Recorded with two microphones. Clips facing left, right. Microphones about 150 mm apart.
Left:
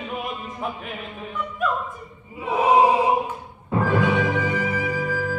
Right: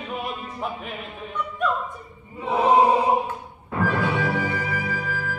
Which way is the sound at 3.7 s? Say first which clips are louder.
Left 3 dB; 20° left (ahead or behind).